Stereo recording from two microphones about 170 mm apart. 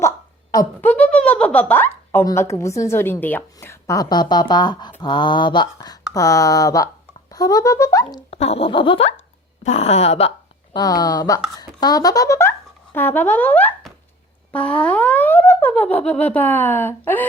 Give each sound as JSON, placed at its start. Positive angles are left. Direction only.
{"t": 0.5, "sound": "speech", "side_deg": 15}
{"t": 8.3, "sound": "a sound", "side_deg": 35}
{"t": 10.8, "sound": "speech", "side_deg": 20}